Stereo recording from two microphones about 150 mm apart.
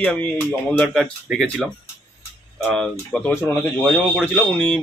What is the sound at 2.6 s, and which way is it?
Speech, 5° left (ahead or behind).